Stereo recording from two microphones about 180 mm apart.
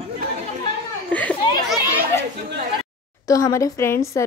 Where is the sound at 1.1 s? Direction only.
5° left (ahead or behind).